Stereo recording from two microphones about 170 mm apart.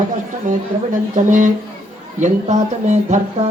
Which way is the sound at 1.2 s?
50° right (ahead or behind).